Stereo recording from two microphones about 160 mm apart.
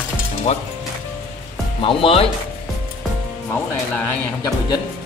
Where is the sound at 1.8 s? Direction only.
35° left (ahead or behind).